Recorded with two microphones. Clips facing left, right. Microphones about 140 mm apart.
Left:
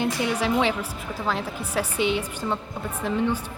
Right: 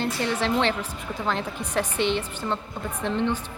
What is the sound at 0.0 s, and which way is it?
A woman's voice, 10° left (ahead or behind).